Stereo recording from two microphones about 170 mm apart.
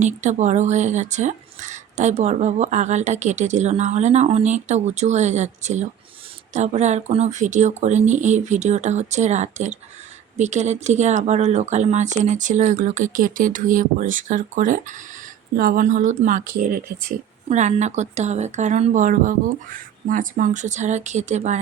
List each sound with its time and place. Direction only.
0.0 s speech: 45° right (ahead or behind)